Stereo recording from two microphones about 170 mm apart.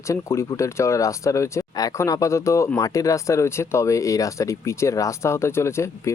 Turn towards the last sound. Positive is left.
turn(degrees=15)  # may be behind; listen again after turning